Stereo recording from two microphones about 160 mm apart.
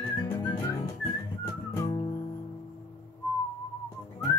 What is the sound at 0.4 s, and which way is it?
Music, 25° left (ahead or behind).